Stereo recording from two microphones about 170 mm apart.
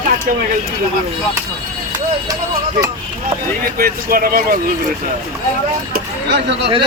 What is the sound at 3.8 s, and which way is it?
Speech, 60° right (ahead or behind).